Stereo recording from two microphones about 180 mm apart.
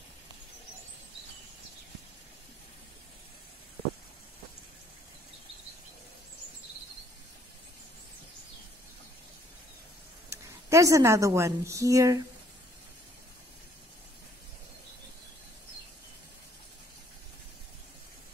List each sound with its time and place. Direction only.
10.3 s a woman's voice: 15° right (ahead or behind)